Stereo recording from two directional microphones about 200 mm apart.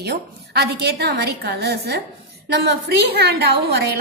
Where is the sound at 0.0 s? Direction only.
55° right (ahead or behind).